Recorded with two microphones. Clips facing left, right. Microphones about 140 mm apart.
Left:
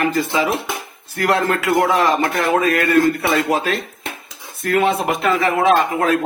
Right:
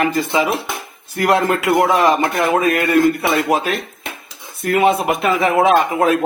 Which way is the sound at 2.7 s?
20° right (ahead or behind).